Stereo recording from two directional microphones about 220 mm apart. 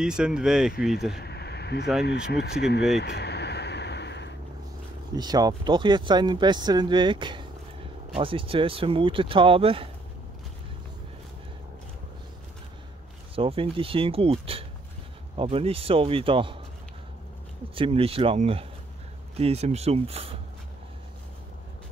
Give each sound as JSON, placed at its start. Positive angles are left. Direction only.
{"t": 0.0, "sound": "speech", "side_deg": -5}
{"t": 1.1, "sound": "a sound", "side_deg": 50}
{"t": 2.0, "sound": "speech", "side_deg": 45}
{"t": 3.0, "sound": "a sound", "side_deg": 45}
{"t": 5.1, "sound": "speech", "side_deg": -20}
{"t": 13.4, "sound": "speech", "side_deg": -25}
{"t": 17.7, "sound": "speech", "side_deg": -25}